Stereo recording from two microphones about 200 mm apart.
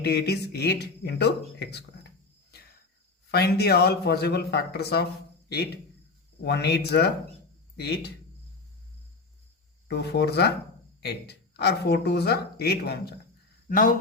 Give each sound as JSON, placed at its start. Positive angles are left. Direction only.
{"t": 0.0, "sound": "speech", "side_deg": 55}
{"t": 3.3, "sound": "speech", "side_deg": 55}
{"t": 9.9, "sound": "speech", "side_deg": 55}
{"t": 13.7, "sound": "speech", "side_deg": 45}